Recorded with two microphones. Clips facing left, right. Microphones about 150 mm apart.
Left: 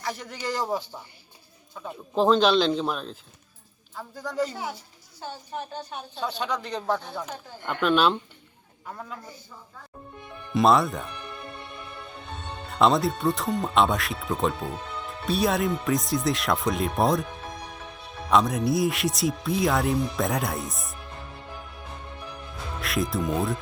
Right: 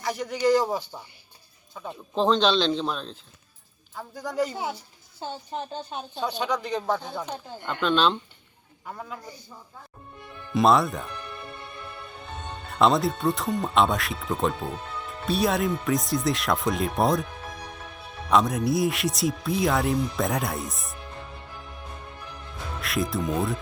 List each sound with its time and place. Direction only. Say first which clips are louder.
0.0 s speech: right 8 dB; 5° right (ahead or behind)
1.9 s speech: left 2 dB; 5° left (ahead or behind)
4.2 s a woman's voice: right 1 dB; 15° right (ahead or behind)
6.2 s speech: right 2 dB; centre (ahead or behind)
8.9 s speech: right 1 dB; 5° right (ahead or behind)
10.5 s speech: even; centre (ahead or behind)
12.8 s speech: even; centre (ahead or behind)
18.3 s speech: even; centre (ahead or behind)
22.8 s speech: even; centre (ahead or behind)